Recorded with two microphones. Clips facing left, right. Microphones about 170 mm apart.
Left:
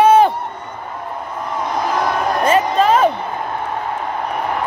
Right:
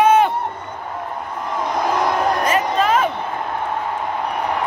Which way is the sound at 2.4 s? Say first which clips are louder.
Left 4 dB; 30° left (ahead or behind).